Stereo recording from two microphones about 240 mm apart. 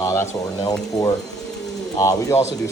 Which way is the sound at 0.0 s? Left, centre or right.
Centre.